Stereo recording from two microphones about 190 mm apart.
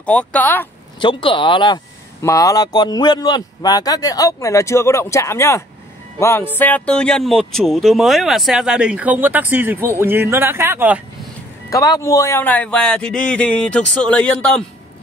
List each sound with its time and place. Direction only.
0.0 s speech: 5° left (ahead or behind)
0.9 s speech: 25° left (ahead or behind); by 11.0 s 10° right (ahead or behind)
11.7 s speech: 15° left (ahead or behind)